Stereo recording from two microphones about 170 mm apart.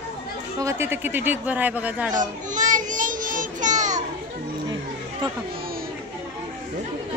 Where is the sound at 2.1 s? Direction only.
50° right (ahead or behind).